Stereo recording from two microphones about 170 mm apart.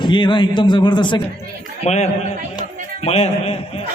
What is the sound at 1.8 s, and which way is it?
A man's voice, 40° left (ahead or behind).